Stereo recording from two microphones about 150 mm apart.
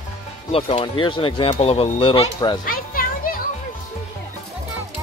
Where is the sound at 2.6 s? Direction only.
70° left (ahead or behind).